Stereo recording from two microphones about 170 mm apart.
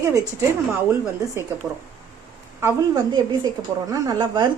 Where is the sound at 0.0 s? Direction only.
20° right (ahead or behind).